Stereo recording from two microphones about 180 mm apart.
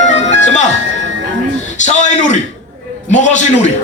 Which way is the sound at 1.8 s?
45° left (ahead or behind).